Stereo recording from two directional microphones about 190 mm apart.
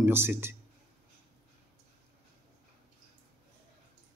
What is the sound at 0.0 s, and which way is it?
Speech, 10° right (ahead or behind).